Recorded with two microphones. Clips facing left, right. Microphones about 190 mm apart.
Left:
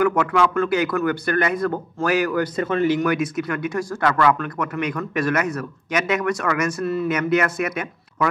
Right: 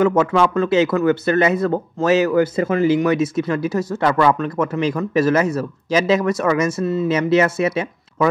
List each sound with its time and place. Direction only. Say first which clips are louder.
0.0 s speech: right 3 dB; 25° right (ahead or behind)